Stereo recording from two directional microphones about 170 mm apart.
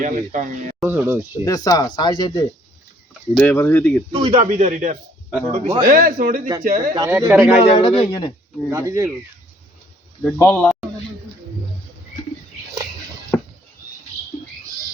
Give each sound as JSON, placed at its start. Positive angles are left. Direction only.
{"t": 0.0, "sound": "speech", "side_deg": -50}
{"t": 0.8, "sound": "speech", "side_deg": -10}
{"t": 1.5, "sound": "speech", "side_deg": 20}
{"t": 3.3, "sound": "speech", "side_deg": 10}
{"t": 4.1, "sound": "a man's voice", "side_deg": -30}
{"t": 4.5, "sound": "a man's voice", "side_deg": -45}
{"t": 5.8, "sound": "speech", "side_deg": -55}
{"t": 6.9, "sound": "speech", "side_deg": -20}
{"t": 7.6, "sound": "a man's voice", "side_deg": 35}
{"t": 8.7, "sound": "speech", "side_deg": -15}
{"t": 10.2, "sound": "speech", "side_deg": 10}